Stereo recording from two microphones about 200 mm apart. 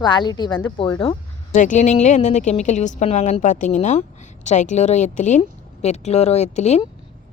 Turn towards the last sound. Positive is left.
turn(degrees=35)  # may be behind; listen again after turning